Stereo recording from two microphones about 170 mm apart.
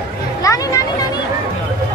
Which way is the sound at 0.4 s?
20° left (ahead or behind).